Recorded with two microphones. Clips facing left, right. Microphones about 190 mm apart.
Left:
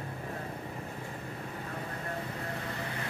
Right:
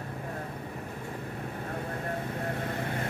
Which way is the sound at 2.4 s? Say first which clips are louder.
Right 5 dB; 55° right (ahead or behind).